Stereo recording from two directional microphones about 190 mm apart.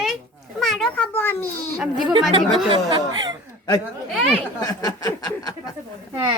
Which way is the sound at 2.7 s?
25° right (ahead or behind).